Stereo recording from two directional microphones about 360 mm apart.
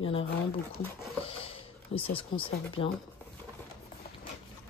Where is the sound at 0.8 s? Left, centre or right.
Centre.